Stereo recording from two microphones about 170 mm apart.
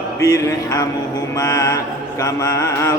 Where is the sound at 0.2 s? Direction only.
20° left (ahead or behind).